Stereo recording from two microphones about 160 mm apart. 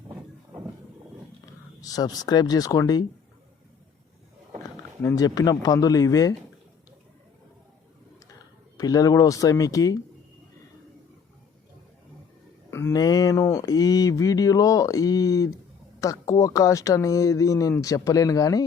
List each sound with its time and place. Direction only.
1.8 s speech: 25° left (ahead or behind)
5.0 s speech: 20° left (ahead or behind)
8.8 s speech: 25° left (ahead or behind)
12.7 s speech: 20° left (ahead or behind)